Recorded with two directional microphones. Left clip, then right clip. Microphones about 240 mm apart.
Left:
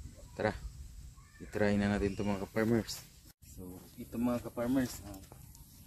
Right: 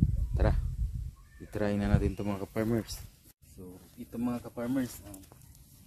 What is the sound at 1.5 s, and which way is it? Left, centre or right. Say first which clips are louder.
Speech: even; right.